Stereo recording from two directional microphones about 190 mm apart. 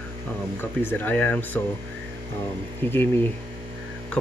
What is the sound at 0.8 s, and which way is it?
Speech, 10° left (ahead or behind).